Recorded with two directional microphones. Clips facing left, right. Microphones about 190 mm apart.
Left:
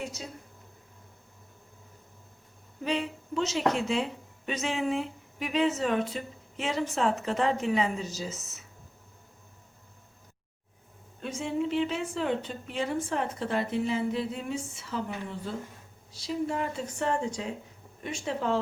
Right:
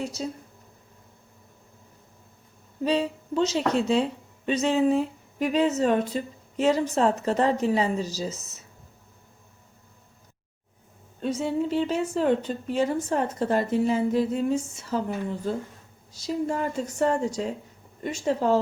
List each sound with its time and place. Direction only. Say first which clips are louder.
0.2 s a woman's voice: right 10 dB; 35° right (ahead or behind)
2.8 s a woman's voice: right 6 dB; 35° right (ahead or behind)
11.2 s a woman's voice: right 5 dB; 35° right (ahead or behind)
16.1 s a woman's voice: right 3 dB; 40° right (ahead or behind)